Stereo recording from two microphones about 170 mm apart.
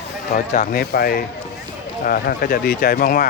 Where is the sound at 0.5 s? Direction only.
55° left (ahead or behind).